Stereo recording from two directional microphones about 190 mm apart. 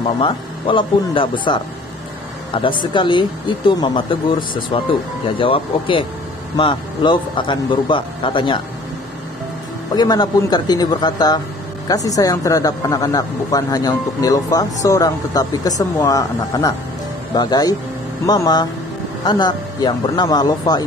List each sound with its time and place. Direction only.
0.2 s speech: 25° left (ahead or behind)
9.9 s speech: 20° left (ahead or behind)